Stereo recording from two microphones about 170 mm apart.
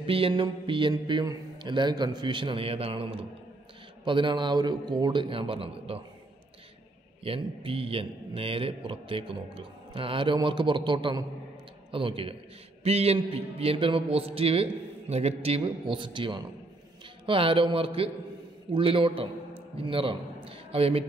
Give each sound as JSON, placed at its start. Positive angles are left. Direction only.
{"t": 0.0, "sound": "a man's voice", "side_deg": -35}
{"t": 7.2, "sound": "speech", "side_deg": -30}
{"t": 20.4, "sound": "a sound", "side_deg": -35}